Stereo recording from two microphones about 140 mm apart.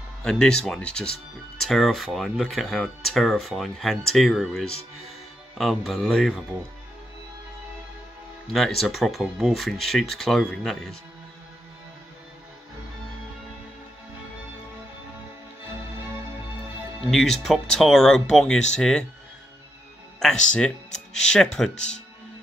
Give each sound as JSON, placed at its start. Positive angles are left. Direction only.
{"t": 0.2, "sound": "speech", "side_deg": 5}
{"t": 8.5, "sound": "speech", "side_deg": 0}
{"t": 17.1, "sound": "speech", "side_deg": 0}
{"t": 20.2, "sound": "speech", "side_deg": 5}